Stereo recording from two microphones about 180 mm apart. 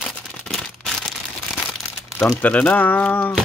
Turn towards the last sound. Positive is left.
turn(degrees=10)  # may be behind; listen again after turning